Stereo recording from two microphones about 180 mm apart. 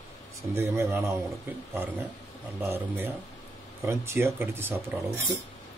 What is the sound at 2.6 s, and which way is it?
Speech, 10° right (ahead or behind).